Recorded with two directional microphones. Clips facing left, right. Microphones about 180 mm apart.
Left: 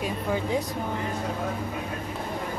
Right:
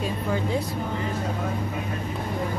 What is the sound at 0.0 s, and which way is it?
Speech, 15° left (ahead or behind).